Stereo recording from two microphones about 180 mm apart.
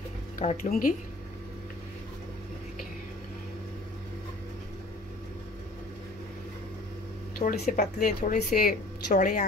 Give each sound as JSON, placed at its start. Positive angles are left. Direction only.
{"t": 0.4, "sound": "a woman's voice", "side_deg": 50}
{"t": 7.3, "sound": "a woman's voice", "side_deg": 55}